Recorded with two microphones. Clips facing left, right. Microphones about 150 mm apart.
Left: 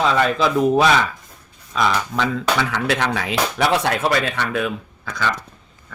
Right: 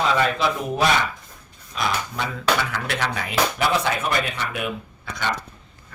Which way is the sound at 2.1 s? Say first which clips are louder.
Left 3 dB; 90° left.